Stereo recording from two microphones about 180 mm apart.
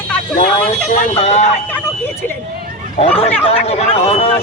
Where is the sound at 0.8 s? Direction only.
40° left (ahead or behind).